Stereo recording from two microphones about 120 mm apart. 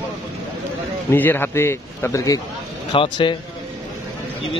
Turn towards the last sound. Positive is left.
turn(degrees=40)  # may be behind; listen again after turning